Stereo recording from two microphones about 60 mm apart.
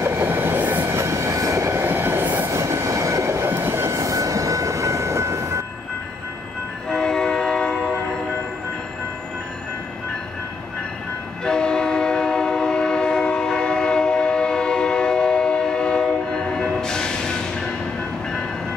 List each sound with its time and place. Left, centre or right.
0.0 s train: right
0.3 s train: right
0.8 s train: right
1.9 s train: right
2.4 s train: right
3.4 s train: right
6.9 s train: centre
11.4 s train: centre